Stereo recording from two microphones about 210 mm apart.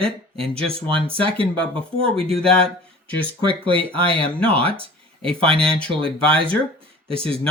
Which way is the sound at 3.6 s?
25° right (ahead or behind).